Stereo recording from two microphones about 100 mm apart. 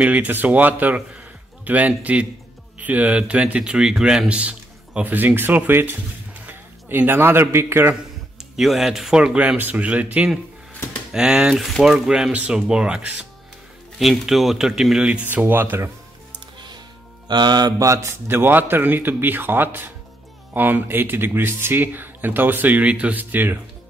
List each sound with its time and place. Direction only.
0.0 s speech: 15° right (ahead or behind)
7.9 s speech: 5° right (ahead or behind)
15.2 s speech: 20° right (ahead or behind)
17.3 s speech: 45° right (ahead or behind); by 23.6 s 20° right (ahead or behind)